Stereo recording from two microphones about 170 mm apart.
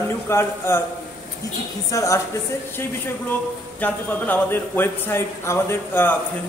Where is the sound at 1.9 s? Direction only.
20° left (ahead or behind).